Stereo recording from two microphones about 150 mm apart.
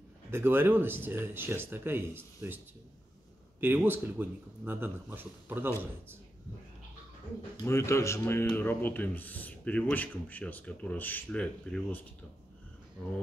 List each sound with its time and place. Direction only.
0.3 s speech: 15° right (ahead or behind)
3.6 s speech: 15° right (ahead or behind)
7.6 s speech: 20° left (ahead or behind)